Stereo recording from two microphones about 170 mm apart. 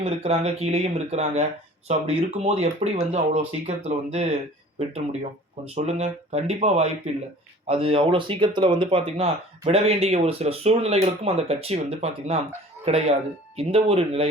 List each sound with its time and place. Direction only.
0.0 s speech: 35° right (ahead or behind)
5.7 s speech: 40° right (ahead or behind)